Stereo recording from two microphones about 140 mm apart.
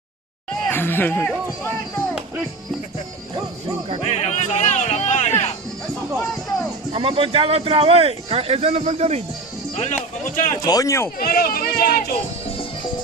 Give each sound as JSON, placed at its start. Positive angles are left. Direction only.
{"t": 0.7, "sound": "speech", "side_deg": 15}
{"t": 4.0, "sound": "music", "side_deg": 55}
{"t": 6.9, "sound": "speech", "side_deg": -40}
{"t": 9.8, "sound": "a man's voice", "side_deg": 60}
{"t": 10.6, "sound": "speech", "side_deg": 25}
{"t": 11.1, "sound": "speech", "side_deg": 90}